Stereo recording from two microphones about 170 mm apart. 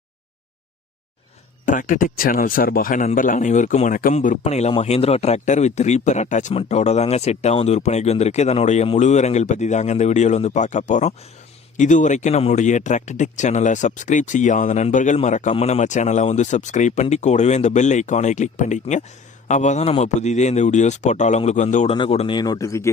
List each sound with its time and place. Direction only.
1.6 s speech: 50° left (ahead or behind)
21.9 s speech: 30° left (ahead or behind)
22.4 s speech: 20° left (ahead or behind)